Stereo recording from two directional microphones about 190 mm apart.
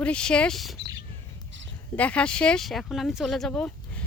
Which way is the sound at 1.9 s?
5° left (ahead or behind).